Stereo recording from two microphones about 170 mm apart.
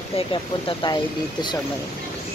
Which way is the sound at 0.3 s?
30° left (ahead or behind).